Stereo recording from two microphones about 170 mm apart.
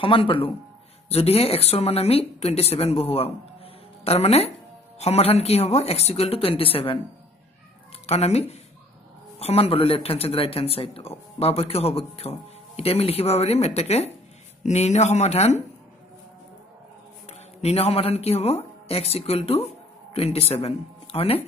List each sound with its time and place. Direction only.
0.0 s speech: 30° left (ahead or behind)
8.1 s speech: 40° left (ahead or behind)
17.3 s speech: 40° left (ahead or behind)